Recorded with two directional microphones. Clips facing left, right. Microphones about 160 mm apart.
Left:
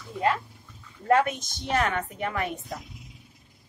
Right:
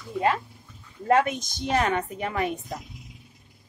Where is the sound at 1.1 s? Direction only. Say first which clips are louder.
Right 1 dB; 20° right (ahead or behind).